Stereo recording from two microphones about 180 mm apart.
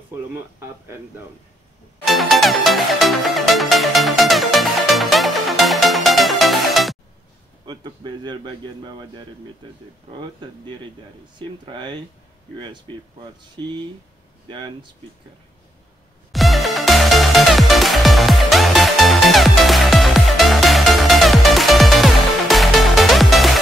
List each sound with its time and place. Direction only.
2.0 s music: centre (ahead or behind)
7.6 s a man's voice: 25° right (ahead or behind)
11.3 s a man's voice: 25° right (ahead or behind)
16.3 s music: centre (ahead or behind)